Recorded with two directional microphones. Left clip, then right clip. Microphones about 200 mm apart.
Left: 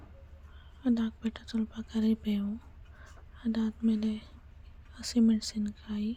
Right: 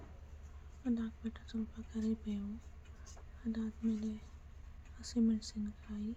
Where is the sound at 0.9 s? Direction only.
40° left (ahead or behind).